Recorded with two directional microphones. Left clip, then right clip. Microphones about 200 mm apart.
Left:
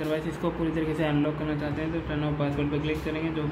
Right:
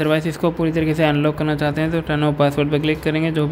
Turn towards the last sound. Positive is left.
turn(degrees=-60)  # may be behind; listen again after turning